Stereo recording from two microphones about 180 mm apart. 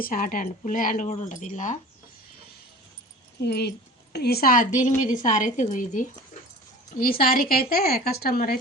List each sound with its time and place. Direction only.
0.0 s speech: 50° left (ahead or behind)
3.4 s a woman's voice: 65° left (ahead or behind)